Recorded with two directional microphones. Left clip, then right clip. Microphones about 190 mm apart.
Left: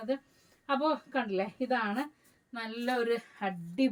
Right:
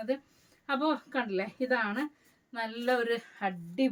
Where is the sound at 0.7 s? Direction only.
20° right (ahead or behind).